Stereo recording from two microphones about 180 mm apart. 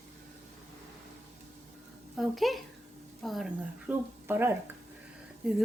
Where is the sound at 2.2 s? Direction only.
Centre (ahead or behind).